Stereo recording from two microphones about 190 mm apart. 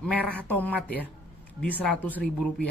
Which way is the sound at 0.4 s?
10° left (ahead or behind).